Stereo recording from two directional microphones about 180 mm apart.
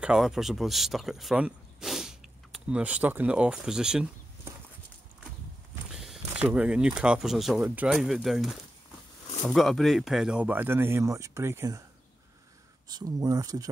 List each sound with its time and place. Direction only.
0.0 s speech: 5° right (ahead or behind)
5.9 s speech: centre (ahead or behind)
12.8 s speech: 20° right (ahead or behind)